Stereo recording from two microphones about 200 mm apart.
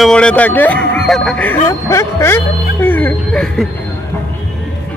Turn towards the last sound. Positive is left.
turn(degrees=5)  # may be behind; listen again after turning